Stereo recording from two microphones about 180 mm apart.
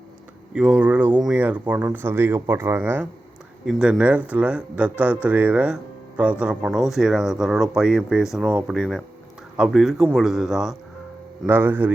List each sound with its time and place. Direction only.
0.5 s speech: 5° right (ahead or behind)